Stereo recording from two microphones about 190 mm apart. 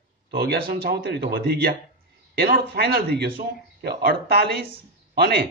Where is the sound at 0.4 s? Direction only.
55° right (ahead or behind).